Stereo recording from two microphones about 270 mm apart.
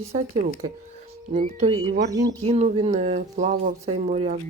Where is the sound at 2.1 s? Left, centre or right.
Centre.